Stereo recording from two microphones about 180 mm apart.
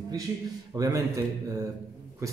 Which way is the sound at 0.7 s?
20° right (ahead or behind).